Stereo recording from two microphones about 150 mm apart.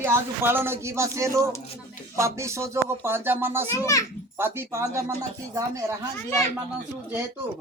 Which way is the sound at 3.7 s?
20° left (ahead or behind).